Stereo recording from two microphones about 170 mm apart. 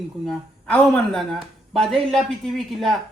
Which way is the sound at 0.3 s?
5° left (ahead or behind).